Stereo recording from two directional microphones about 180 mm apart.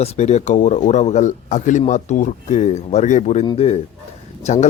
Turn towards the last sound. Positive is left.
turn(degrees=40)  # may be behind; listen again after turning